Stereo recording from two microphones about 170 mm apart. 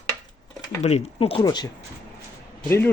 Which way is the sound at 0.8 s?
35° left (ahead or behind).